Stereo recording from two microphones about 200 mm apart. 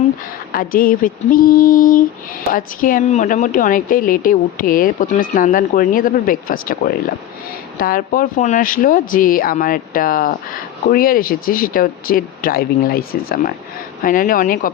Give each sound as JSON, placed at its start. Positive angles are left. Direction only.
{"t": 0.5, "sound": "a woman's voice", "side_deg": 45}